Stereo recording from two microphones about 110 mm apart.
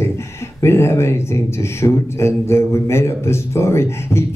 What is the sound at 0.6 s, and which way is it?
Speech, 25° left (ahead or behind).